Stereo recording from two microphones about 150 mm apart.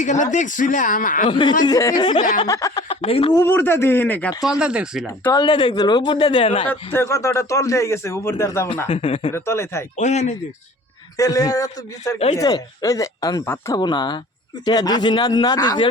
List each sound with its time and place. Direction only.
0.0 s speech: 55° left (ahead or behind)
1.3 s a man's voice: 30° left (ahead or behind)
2.9 s speech: 40° left (ahead or behind)
3.3 s speech: 15° left (ahead or behind)
4.4 s speech: 5° right (ahead or behind)
5.3 s speech: 30° left (ahead or behind)
6.7 s a man's voice: 15° left (ahead or behind)
8.9 s speech: 35° left (ahead or behind)
9.3 s a man's voice: 20° left (ahead or behind)
10.0 s speech: 50° left (ahead or behind)
11.2 s a man's voice: 25° left (ahead or behind)
13.7 s a man's voice: 30° left (ahead or behind)